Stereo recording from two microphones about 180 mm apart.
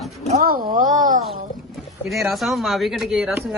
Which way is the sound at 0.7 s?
45° right (ahead or behind).